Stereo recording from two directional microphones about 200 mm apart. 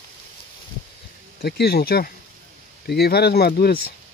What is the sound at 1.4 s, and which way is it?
Speech, 55° left (ahead or behind).